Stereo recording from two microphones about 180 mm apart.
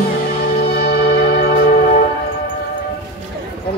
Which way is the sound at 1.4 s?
40° left (ahead or behind).